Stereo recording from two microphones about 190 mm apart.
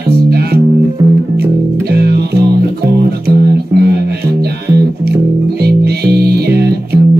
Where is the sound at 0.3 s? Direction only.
55° right (ahead or behind).